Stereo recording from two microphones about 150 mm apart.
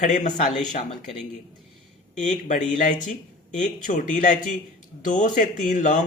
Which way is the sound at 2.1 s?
55° left (ahead or behind).